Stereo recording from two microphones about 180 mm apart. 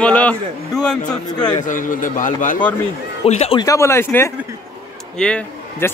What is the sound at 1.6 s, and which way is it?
A man's voice, 45° left (ahead or behind).